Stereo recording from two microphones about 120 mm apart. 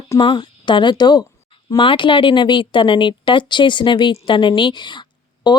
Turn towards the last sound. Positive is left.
turn(degrees=40)  # may be behind; listen again after turning